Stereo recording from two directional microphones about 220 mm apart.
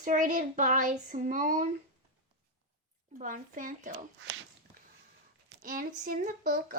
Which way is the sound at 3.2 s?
35° right (ahead or behind).